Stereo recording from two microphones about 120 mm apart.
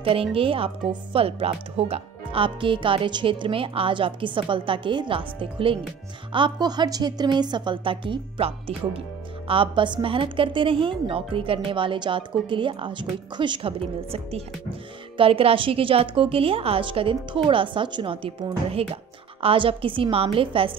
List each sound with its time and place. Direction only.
0.0 s a woman's voice: 50° right (ahead or behind)